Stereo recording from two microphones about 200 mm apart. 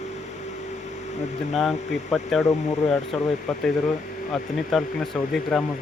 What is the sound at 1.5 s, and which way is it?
Speech, centre (ahead or behind).